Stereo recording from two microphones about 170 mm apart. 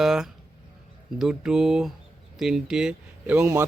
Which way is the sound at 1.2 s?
5° right (ahead or behind).